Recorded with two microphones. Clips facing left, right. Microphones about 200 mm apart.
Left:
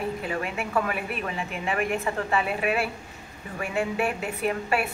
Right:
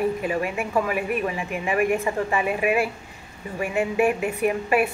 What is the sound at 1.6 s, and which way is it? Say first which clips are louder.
Speech: right 5 dB; 10° right (ahead or behind).